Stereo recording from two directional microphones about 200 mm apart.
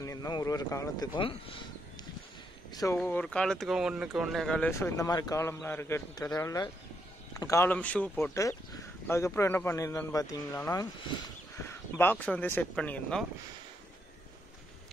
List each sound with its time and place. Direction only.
0.0 s speech: 15° left (ahead or behind)
2.7 s speech: 20° left (ahead or behind)
3.0 s speech: 5° left (ahead or behind)